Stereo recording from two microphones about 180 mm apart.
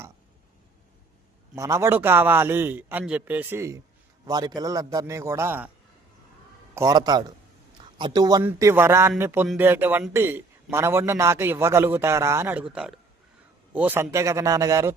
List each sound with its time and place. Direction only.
1.5 s a man's voice: 15° right (ahead or behind)
6.7 s a man's voice: 20° right (ahead or behind)
13.7 s a man's voice: 10° right (ahead or behind)